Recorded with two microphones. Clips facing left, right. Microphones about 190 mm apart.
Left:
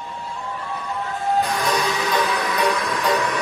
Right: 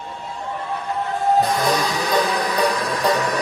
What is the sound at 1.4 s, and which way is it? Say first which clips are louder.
Music: right 2 dB; 35° right (ahead or behind).